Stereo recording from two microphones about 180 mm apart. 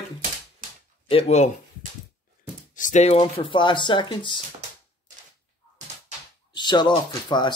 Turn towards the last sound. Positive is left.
turn(degrees=25)  # may be behind; listen again after turning